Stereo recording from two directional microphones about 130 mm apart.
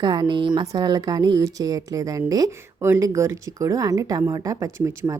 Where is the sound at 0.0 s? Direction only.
35° right (ahead or behind).